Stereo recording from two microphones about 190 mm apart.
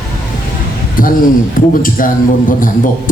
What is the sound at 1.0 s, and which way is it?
Speech, 45° left (ahead or behind).